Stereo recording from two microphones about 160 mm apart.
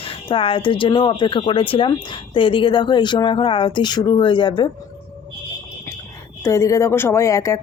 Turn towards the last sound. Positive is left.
turn(degrees=20)  # may be behind; listen again after turning